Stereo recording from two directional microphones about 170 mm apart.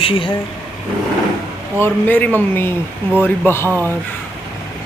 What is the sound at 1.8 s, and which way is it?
Speech, 10° left (ahead or behind).